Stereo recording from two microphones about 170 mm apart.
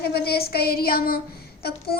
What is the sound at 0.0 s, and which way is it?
Child singing, 70° left (ahead or behind).